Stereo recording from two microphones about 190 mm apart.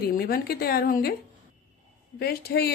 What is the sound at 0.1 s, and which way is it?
A woman's voice, 50° left (ahead or behind).